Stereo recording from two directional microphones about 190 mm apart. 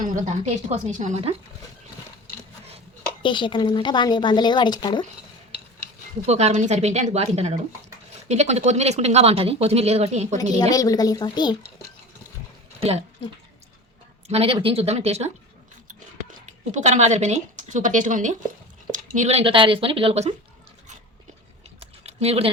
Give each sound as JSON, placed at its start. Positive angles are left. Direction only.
{"t": 0.0, "sound": "speech", "side_deg": -45}
{"t": 3.2, "sound": "speech", "side_deg": 25}
{"t": 6.2, "sound": "speech", "side_deg": -35}
{"t": 10.6, "sound": "speech", "side_deg": 20}
{"t": 14.3, "sound": "speech", "side_deg": -30}
{"t": 16.7, "sound": "speech", "side_deg": -35}
{"t": 21.8, "sound": "a sound", "side_deg": -35}